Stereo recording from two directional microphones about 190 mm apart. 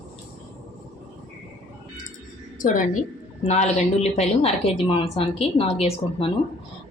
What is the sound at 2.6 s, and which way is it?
A woman's voice, 45° left (ahead or behind).